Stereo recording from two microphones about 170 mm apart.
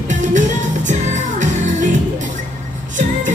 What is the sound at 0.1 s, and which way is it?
Music, 45° right (ahead or behind).